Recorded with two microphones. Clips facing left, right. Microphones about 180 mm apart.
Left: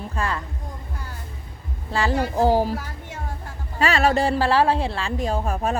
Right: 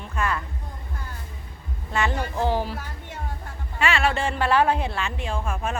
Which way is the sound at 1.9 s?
30° left (ahead or behind).